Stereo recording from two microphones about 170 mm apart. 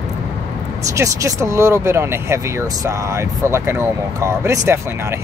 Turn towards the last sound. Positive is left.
turn(degrees=-15)  # may be behind; listen again after turning